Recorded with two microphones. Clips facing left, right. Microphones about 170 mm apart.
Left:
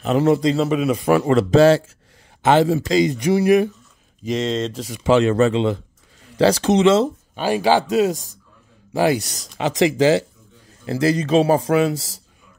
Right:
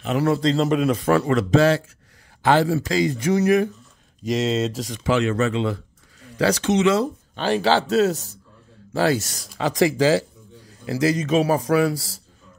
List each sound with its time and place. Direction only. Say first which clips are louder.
0.2 s speech: left 3 dB; 20° left (ahead or behind)
0.5 s speech: left 1 dB; 5° left (ahead or behind)
0.9 s speech: left 2 dB; 15° left (ahead or behind)
1.2 s speech: left 4 dB; 30° left (ahead or behind)
2.4 s speech: left 3 dB; 20° left (ahead or behind)
4.2 s speech: even; centre (ahead or behind)
5.0 s speech: left 5 dB; 30° left (ahead or behind)
7.3 s speech: left 2 dB; 10° left (ahead or behind)